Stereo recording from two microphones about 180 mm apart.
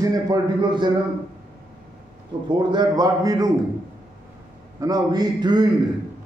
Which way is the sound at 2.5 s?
25° right (ahead or behind).